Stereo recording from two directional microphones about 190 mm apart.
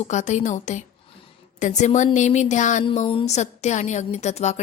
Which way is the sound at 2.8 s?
30° left (ahead or behind).